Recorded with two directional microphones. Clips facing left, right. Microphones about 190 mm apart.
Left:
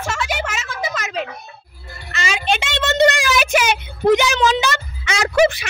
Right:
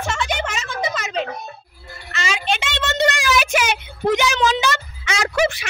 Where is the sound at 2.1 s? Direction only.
15° left (ahead or behind).